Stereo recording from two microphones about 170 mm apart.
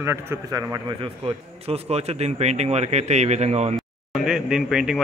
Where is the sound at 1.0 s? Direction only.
35° right (ahead or behind).